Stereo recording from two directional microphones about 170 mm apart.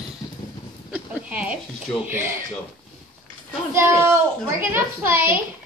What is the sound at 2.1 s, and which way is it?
Speech, 15° right (ahead or behind).